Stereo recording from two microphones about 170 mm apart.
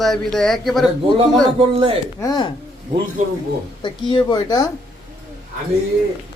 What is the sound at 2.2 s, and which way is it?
Speech, 20° left (ahead or behind).